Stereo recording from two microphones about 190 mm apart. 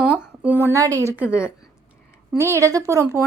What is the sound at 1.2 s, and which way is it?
A woman's voice, 5° right (ahead or behind).